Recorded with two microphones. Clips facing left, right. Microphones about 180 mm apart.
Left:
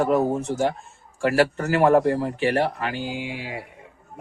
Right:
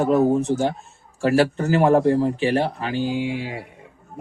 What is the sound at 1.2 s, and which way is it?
A man's voice, 25° right (ahead or behind).